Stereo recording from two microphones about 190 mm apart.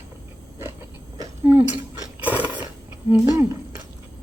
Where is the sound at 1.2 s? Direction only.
10° right (ahead or behind).